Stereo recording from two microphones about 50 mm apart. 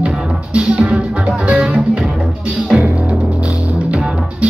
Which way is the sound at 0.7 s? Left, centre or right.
Right.